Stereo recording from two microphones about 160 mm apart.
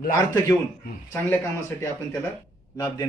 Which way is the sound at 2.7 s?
20° left (ahead or behind).